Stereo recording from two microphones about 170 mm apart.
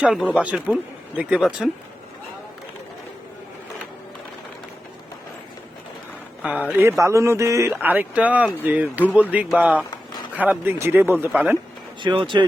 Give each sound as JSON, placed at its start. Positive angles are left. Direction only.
{"t": 0.0, "sound": "speech", "side_deg": -5}
{"t": 6.4, "sound": "speech", "side_deg": -5}
{"t": 9.9, "sound": "a sound", "side_deg": 25}
{"t": 10.3, "sound": "speech", "side_deg": -10}
{"t": 12.0, "sound": "speech", "side_deg": -30}